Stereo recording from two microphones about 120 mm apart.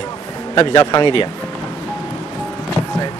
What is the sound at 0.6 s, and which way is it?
Speech, 40° left (ahead or behind).